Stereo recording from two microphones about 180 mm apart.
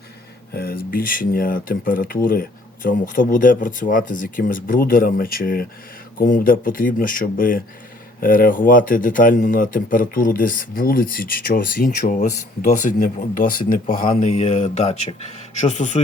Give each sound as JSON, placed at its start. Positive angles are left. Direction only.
{"t": 0.5, "sound": "speech", "side_deg": 55}